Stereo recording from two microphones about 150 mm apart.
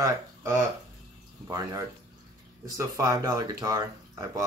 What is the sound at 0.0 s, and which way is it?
Speech, 20° right (ahead or behind).